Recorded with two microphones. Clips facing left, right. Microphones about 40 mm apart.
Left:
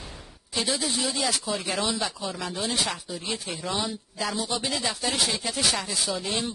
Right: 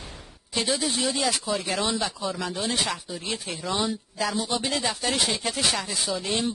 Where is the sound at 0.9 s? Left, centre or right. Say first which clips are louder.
Right 2 dB; right.